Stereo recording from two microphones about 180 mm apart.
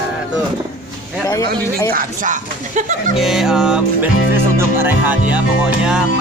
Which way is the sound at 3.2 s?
Centre (ahead or behind).